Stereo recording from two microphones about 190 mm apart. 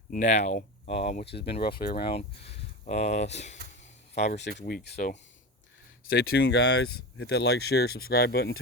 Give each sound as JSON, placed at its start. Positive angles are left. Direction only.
{"t": 0.1, "sound": "speech", "side_deg": 40}
{"t": 1.2, "sound": "speech", "side_deg": 60}
{"t": 2.0, "sound": "speech", "side_deg": 30}
{"t": 4.4, "sound": "speech", "side_deg": 65}
{"t": 6.2, "sound": "speech", "side_deg": 60}